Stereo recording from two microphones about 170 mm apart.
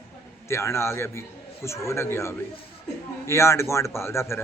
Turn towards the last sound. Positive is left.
turn(degrees=15)  # may be behind; listen again after turning